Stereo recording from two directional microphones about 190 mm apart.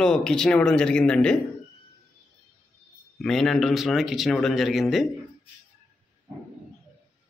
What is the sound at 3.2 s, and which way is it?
Speech, centre (ahead or behind).